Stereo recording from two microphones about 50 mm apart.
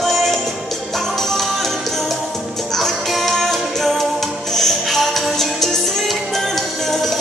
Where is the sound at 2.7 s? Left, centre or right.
Centre.